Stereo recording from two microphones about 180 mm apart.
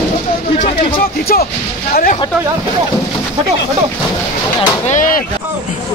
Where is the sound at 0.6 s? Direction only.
55° left (ahead or behind).